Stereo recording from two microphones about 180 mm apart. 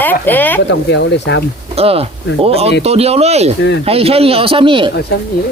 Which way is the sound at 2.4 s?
35° right (ahead or behind).